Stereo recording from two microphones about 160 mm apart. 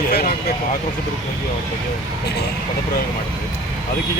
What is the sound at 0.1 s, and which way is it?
Vehicle, 70° left (ahead or behind).